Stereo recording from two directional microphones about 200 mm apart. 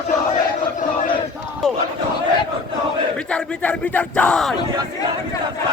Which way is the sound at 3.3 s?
5° left (ahead or behind).